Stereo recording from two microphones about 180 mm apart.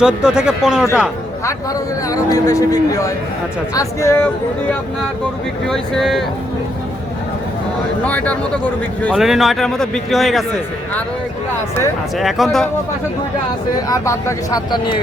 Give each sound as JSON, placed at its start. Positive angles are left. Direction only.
{"t": 0.0, "sound": "a man's voice", "side_deg": -5}
{"t": 2.0, "sound": "a man's voice", "side_deg": 20}
{"t": 5.6, "sound": "a man's voice", "side_deg": 0}
{"t": 8.0, "sound": "a man's voice", "side_deg": 10}
{"t": 9.1, "sound": "a man's voice", "side_deg": 0}
{"t": 12.1, "sound": "a man's voice", "side_deg": 0}
{"t": 13.8, "sound": "speech", "side_deg": 20}